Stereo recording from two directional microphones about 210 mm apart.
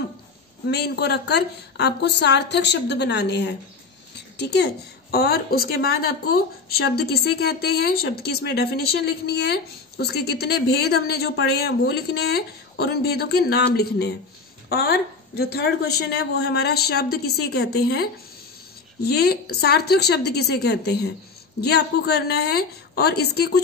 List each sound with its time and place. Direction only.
0.7 s speech: 50° left (ahead or behind)
4.1 s a sound: 55° left (ahead or behind)
5.1 s speech: 45° left (ahead or behind)